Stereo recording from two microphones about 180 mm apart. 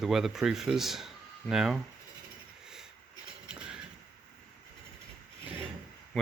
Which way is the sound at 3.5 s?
5° right (ahead or behind).